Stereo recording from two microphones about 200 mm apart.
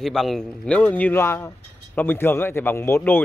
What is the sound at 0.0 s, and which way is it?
Speech, centre (ahead or behind).